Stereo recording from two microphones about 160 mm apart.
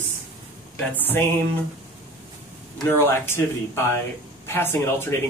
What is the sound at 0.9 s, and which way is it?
Speech, 10° left (ahead or behind).